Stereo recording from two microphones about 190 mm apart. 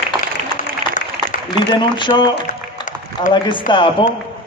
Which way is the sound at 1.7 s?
25° left (ahead or behind).